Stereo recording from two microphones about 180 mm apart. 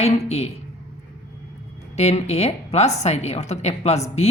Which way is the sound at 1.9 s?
35° left (ahead or behind).